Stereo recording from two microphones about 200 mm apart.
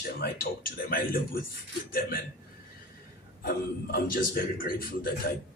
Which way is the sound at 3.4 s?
50° left (ahead or behind).